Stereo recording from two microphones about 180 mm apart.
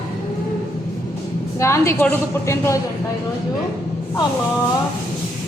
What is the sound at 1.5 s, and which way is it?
Speech, 15° left (ahead or behind).